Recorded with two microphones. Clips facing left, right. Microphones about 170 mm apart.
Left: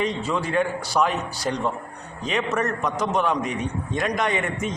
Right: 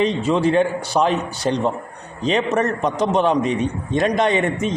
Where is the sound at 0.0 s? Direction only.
20° right (ahead or behind).